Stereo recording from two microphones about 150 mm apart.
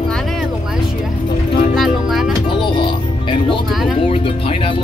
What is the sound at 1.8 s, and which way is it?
Music, centre (ahead or behind).